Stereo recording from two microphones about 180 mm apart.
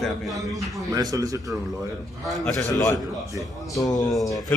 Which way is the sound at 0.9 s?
20° right (ahead or behind).